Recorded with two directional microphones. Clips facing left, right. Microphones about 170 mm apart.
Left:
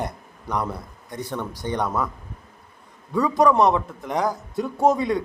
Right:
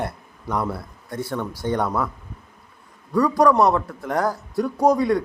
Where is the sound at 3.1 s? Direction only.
Centre (ahead or behind).